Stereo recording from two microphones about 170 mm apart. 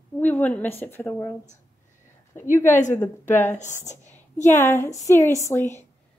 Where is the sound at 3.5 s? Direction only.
45° left (ahead or behind).